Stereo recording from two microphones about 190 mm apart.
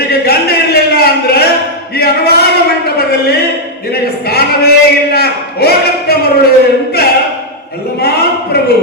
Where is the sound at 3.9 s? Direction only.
55° left (ahead or behind).